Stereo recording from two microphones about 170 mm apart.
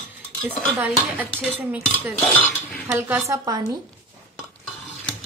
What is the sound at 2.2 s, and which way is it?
Speech, 5° left (ahead or behind).